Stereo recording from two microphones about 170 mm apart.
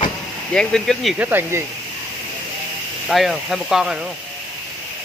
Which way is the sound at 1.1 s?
10° right (ahead or behind).